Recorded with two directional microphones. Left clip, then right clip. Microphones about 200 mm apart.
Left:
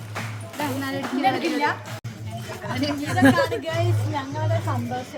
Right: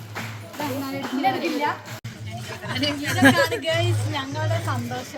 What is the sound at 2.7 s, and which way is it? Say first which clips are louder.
Speech: right 2 dB; 40° left (ahead or behind).